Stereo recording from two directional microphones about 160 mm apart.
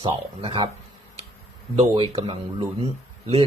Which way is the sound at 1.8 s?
35° right (ahead or behind).